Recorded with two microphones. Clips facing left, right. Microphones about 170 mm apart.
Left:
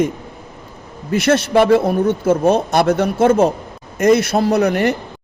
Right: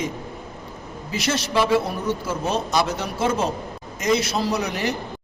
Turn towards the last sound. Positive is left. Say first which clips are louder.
# left 9 dB
turn(degrees=55)  # may be behind; listen again after turning